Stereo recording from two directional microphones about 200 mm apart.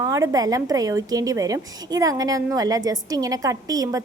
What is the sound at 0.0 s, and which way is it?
A woman's voice, 15° right (ahead or behind).